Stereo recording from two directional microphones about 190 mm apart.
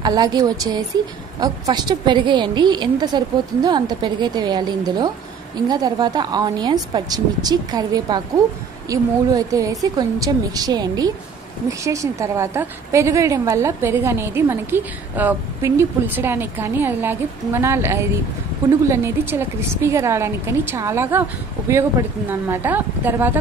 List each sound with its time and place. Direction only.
0.0 s a woman's voice: 20° right (ahead or behind)